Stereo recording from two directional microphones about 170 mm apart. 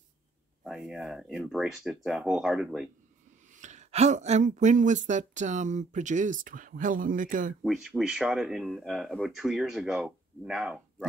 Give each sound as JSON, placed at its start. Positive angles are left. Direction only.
{"t": 0.7, "sound": "speech", "side_deg": -5}
{"t": 3.5, "sound": "speech", "side_deg": -45}
{"t": 7.6, "sound": "speech", "side_deg": 0}